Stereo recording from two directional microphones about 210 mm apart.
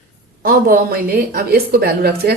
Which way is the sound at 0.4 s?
45° right (ahead or behind).